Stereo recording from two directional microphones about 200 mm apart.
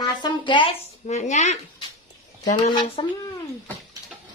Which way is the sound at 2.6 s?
25° left (ahead or behind).